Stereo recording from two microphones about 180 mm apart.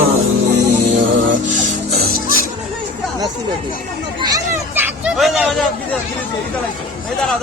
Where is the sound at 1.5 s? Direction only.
55° right (ahead or behind).